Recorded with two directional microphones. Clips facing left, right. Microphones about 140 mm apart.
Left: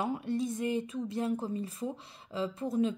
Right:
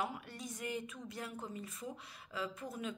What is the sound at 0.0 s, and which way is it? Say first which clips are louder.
A woman's voice: left 10 dB; 25° left (ahead or behind).